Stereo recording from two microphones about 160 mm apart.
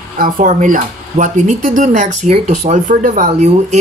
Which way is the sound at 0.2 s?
55° right (ahead or behind).